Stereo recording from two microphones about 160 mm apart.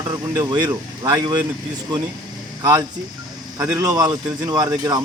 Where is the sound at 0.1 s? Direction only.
25° right (ahead or behind).